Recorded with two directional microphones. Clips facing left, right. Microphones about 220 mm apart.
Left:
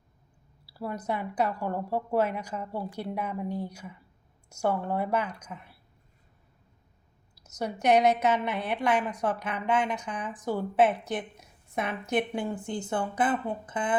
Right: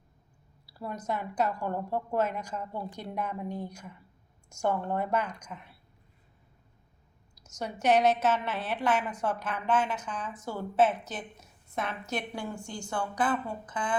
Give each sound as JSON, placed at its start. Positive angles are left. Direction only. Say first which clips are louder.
{"t": 0.6, "sound": "a sound", "louder": "left 3 dB", "side_deg": 5}
{"t": 1.0, "sound": "a woman's voice", "louder": "left 1 dB", "side_deg": 10}
{"t": 7.6, "sound": "a woman's voice", "louder": "left 2 dB", "side_deg": 10}